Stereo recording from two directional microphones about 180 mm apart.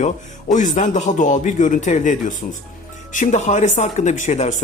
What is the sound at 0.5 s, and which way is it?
Speech, 45° left (ahead or behind).